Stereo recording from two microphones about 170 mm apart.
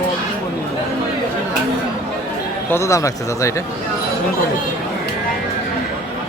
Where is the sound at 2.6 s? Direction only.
15° left (ahead or behind).